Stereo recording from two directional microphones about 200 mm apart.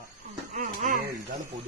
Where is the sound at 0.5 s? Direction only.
40° right (ahead or behind).